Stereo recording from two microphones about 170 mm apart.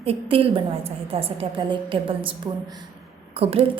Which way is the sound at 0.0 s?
35° right (ahead or behind).